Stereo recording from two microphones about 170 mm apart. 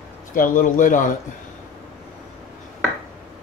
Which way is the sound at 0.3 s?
55° left (ahead or behind).